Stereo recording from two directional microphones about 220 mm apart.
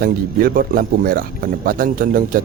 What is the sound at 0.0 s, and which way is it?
Speech, 40° right (ahead or behind).